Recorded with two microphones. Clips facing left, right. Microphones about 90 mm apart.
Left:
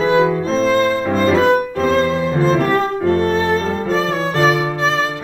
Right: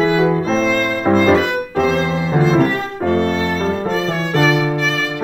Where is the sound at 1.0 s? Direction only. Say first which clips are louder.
Right 3 dB; 35° right (ahead or behind).